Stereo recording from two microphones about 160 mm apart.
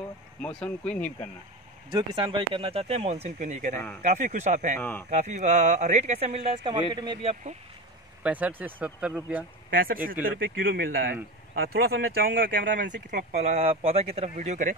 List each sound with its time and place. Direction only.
0.4 s speech: 5° left (ahead or behind)
1.9 s speech: 30° right (ahead or behind); by 4.7 s 50° right (ahead or behind)
4.7 s speech: 10° left (ahead or behind)
5.1 s speech: 50° right (ahead or behind)
8.2 s speech: 10° right (ahead or behind)
9.7 s speech: 65° right (ahead or behind); by 14.8 s 50° right (ahead or behind)